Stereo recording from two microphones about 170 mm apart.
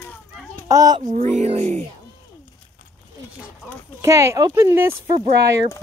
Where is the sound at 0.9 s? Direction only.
45° right (ahead or behind).